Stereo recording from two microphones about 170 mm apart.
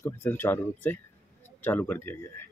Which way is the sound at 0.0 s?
15° left (ahead or behind).